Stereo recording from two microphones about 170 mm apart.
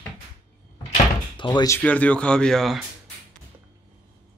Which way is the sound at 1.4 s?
30° left (ahead or behind).